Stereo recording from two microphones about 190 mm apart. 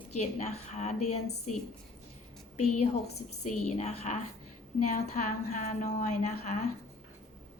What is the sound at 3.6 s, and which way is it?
A woman's voice, 35° left (ahead or behind).